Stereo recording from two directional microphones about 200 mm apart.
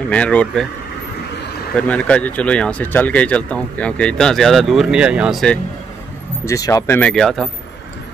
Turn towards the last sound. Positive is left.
turn(degrees=0)  # may be behind; listen again after turning